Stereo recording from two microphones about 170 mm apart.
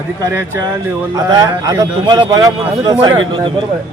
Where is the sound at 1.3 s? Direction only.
25° right (ahead or behind).